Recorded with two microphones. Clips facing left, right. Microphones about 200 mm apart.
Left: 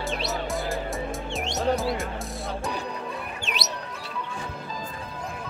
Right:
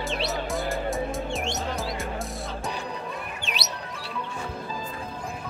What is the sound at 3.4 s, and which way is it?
Music, 45° left (ahead or behind).